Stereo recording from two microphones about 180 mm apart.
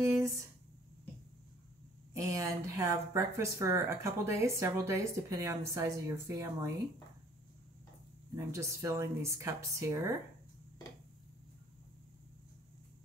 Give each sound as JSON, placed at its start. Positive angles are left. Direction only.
{"t": 0.0, "sound": "a woman's voice", "side_deg": -15}
{"t": 2.1, "sound": "a woman's voice", "side_deg": -15}
{"t": 8.5, "sound": "a woman's voice", "side_deg": -15}